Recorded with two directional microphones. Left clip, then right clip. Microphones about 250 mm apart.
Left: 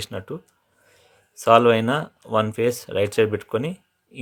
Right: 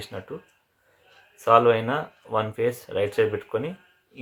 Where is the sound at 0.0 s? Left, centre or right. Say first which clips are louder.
Left 4 dB; left.